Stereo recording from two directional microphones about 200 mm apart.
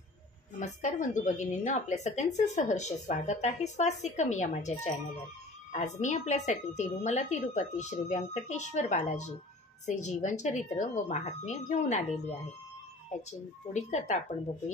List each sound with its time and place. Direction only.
0.6 s a woman's voice: 40° left (ahead or behind)
13.3 s a woman's voice: 35° left (ahead or behind)